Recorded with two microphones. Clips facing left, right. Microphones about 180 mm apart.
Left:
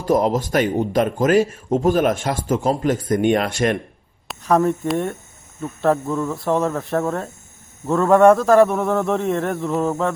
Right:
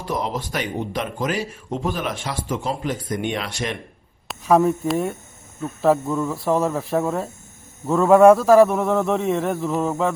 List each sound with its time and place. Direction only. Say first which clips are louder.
0.0 s speech: left 8 dB; 45° left (ahead or behind)
4.3 s a man's voice: right 1 dB; centre (ahead or behind)